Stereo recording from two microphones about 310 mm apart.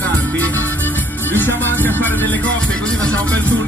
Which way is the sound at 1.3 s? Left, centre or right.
Centre.